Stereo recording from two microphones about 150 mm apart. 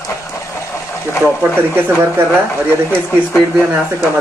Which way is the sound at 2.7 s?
15° left (ahead or behind).